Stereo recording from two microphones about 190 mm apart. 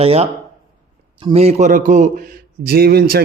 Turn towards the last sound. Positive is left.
turn(degrees=-55)  # may be behind; listen again after turning